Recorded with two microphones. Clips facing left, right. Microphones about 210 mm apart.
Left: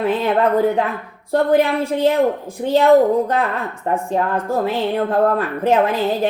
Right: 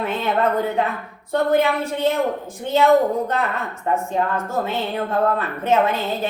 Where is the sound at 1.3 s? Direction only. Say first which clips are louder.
Left 3 dB; 30° left (ahead or behind).